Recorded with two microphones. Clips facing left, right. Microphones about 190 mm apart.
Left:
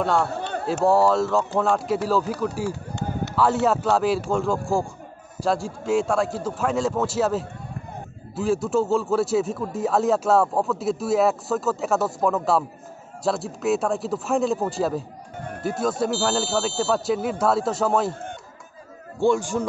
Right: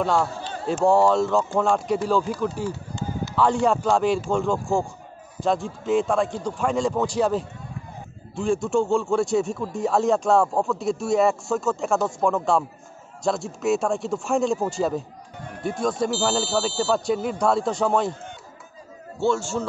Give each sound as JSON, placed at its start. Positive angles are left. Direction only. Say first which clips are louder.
{"t": 0.0, "sound": "speech", "louder": "even", "side_deg": 0}
{"t": 0.3, "sound": "a sound", "louder": "left 4 dB", "side_deg": 60}
{"t": 0.8, "sound": "a man's voice", "louder": "right 1 dB", "side_deg": 5}
{"t": 19.1, "sound": "a man's voice", "louder": "left 2 dB", "side_deg": 15}